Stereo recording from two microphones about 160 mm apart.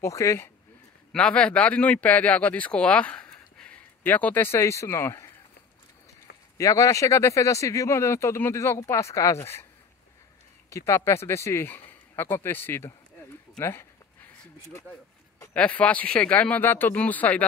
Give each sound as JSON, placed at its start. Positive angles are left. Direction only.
{"t": 0.0, "sound": "speech", "side_deg": 20}
{"t": 1.1, "sound": "speech", "side_deg": 5}
{"t": 6.6, "sound": "speech", "side_deg": 20}
{"t": 10.7, "sound": "speech", "side_deg": 20}
{"t": 15.5, "sound": "speech", "side_deg": 5}